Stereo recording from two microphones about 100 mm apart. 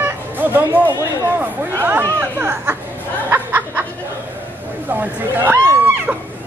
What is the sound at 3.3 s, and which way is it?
Snicker, 20° right (ahead or behind).